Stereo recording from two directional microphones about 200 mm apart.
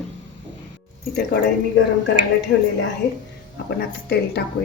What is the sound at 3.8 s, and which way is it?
Speech, 55° left (ahead or behind).